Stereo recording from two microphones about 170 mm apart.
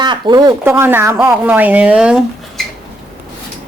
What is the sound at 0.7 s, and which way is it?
Speech, 15° right (ahead or behind).